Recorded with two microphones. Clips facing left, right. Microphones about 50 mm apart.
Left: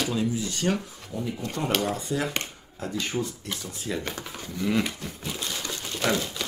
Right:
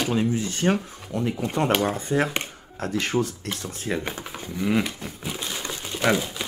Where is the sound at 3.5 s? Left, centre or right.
Right.